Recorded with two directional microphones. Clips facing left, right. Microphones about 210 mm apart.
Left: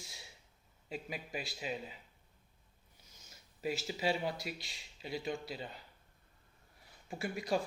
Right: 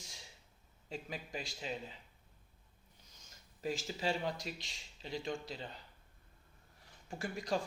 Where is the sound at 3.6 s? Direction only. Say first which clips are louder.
Left 2 dB; 10° left (ahead or behind).